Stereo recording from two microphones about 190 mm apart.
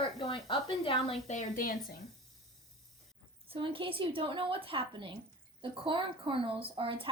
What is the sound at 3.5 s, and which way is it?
Speech, 30° right (ahead or behind).